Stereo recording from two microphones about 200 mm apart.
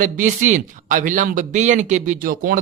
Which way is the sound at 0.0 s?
40° right (ahead or behind).